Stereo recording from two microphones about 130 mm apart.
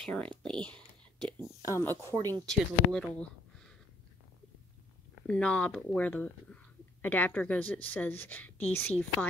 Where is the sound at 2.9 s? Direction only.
5° left (ahead or behind).